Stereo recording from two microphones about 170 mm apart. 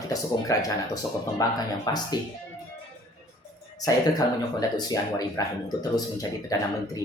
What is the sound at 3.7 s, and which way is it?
Speech, 20° left (ahead or behind).